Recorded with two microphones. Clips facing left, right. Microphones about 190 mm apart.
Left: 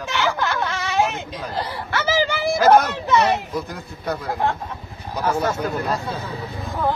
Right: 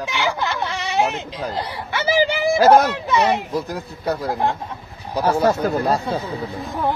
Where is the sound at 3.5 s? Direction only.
35° right (ahead or behind).